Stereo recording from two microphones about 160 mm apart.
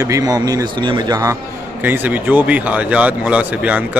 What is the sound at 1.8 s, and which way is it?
A man's voice, 10° right (ahead or behind).